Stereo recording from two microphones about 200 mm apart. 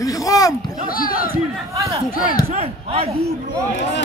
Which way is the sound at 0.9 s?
45° left (ahead or behind).